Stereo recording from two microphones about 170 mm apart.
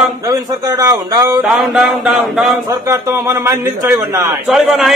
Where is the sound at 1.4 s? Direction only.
5° right (ahead or behind).